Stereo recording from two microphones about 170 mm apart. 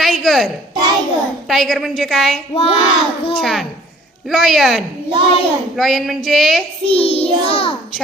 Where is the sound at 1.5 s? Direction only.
Centre (ahead or behind).